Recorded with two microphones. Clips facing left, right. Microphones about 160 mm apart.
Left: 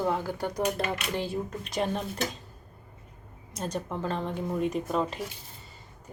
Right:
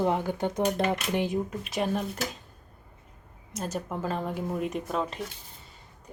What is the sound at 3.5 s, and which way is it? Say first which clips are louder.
Speech: even; 5° right (ahead or behind).